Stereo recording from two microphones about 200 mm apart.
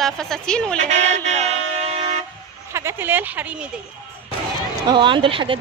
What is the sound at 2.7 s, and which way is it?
Speech, 10° right (ahead or behind).